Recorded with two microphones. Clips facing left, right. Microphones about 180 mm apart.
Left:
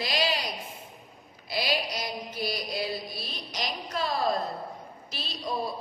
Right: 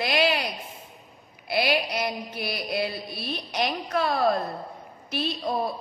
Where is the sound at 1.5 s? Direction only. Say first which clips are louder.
Right 5 dB; 60° right (ahead or behind).